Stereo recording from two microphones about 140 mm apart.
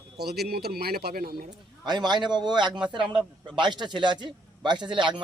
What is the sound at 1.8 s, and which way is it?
A man's voice, 30° right (ahead or behind).